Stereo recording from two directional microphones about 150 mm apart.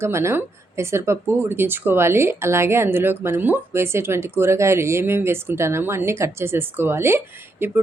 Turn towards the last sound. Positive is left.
turn(degrees=-15)  # may be behind; listen again after turning